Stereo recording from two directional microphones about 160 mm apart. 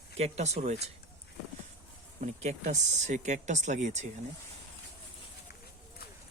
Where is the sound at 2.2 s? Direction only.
45° right (ahead or behind).